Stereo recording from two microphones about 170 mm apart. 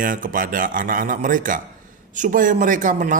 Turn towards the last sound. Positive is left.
turn(degrees=-50)  # may be behind; listen again after turning